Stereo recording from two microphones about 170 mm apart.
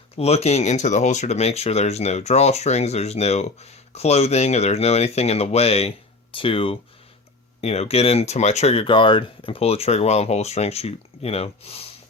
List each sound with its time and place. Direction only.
0.2 s speech: 35° left (ahead or behind)